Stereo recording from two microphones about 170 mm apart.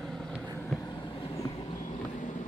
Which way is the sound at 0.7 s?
25° left (ahead or behind).